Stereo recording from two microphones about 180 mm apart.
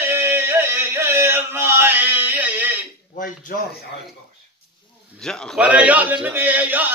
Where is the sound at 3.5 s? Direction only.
55° left (ahead or behind).